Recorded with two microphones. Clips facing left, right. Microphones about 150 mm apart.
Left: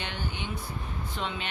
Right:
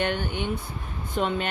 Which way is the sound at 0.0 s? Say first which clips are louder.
Right 9 dB; 55° right (ahead or behind).